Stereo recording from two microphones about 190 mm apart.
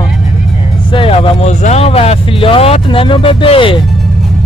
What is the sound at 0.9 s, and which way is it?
Speech, 30° left (ahead or behind).